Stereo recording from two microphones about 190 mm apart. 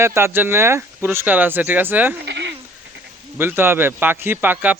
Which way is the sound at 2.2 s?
65° right (ahead or behind).